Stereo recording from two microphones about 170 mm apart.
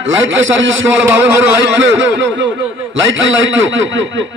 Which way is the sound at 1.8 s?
90° right.